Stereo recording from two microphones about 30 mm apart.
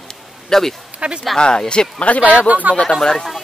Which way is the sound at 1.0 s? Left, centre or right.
Right.